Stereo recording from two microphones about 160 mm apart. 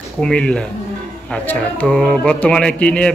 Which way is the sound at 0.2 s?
5° left (ahead or behind).